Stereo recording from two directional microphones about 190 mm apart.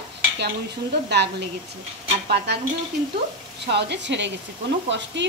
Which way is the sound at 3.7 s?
65° right (ahead or behind).